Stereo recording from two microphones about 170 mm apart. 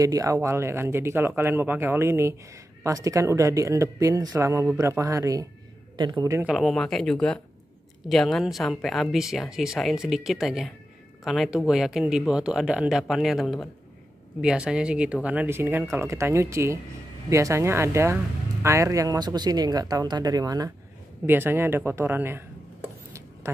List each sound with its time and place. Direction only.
0.0 s speech: 20° right (ahead or behind)
6.4 s speech: centre (ahead or behind)